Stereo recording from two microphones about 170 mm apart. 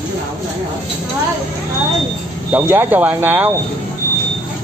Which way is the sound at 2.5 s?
10° right (ahead or behind).